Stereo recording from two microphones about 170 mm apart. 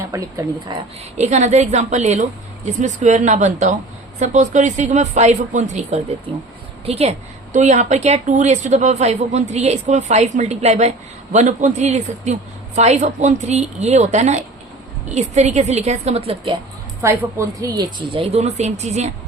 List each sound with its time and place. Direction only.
0.0 s a sound: 15° right (ahead or behind)
0.7 s a woman's voice: 25° right (ahead or behind)
1.1 s a woman's voice: 40° right (ahead or behind)
17.0 s speech: 15° right (ahead or behind); by 19.1 s 40° right (ahead or behind)